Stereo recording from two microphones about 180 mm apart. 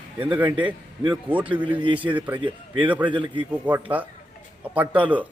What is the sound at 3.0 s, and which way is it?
Speech, 25° right (ahead or behind).